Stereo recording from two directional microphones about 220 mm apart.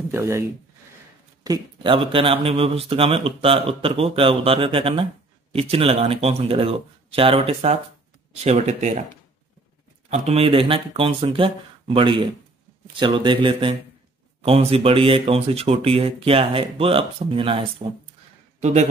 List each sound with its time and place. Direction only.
0.1 s speech: 10° right (ahead or behind); by 9.0 s 30° right (ahead or behind)
10.0 s a man's voice: 30° right (ahead or behind)